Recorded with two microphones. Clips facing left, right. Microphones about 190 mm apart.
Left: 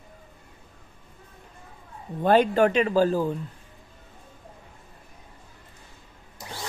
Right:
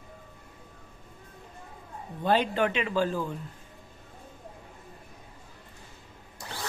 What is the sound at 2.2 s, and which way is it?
Speech, 45° left (ahead or behind).